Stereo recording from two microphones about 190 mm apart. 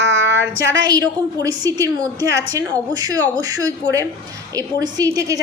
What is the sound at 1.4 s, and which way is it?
A woman's voice, 20° right (ahead or behind).